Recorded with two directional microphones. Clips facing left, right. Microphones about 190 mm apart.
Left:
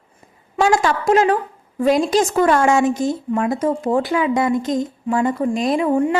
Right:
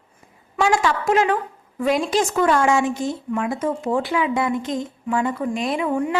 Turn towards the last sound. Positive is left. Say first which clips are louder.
# left 5 dB
turn(degrees=35)  # may be behind; listen again after turning